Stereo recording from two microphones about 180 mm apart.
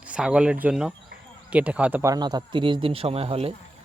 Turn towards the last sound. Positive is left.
turn(degrees=-30)  # may be behind; listen again after turning